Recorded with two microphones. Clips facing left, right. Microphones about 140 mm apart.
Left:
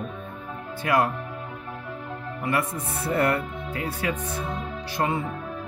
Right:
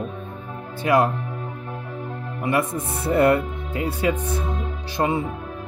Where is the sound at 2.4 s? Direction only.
20° right (ahead or behind).